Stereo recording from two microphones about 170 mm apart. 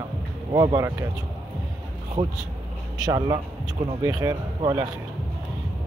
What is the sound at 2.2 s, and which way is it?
Speech, 25° right (ahead or behind).